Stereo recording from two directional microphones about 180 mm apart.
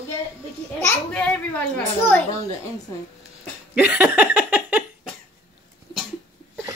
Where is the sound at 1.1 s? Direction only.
5° left (ahead or behind).